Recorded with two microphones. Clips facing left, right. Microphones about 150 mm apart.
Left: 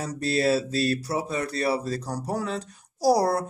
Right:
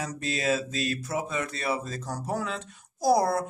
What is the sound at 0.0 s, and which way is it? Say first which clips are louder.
Speech: left 5 dB; 35° left (ahead or behind).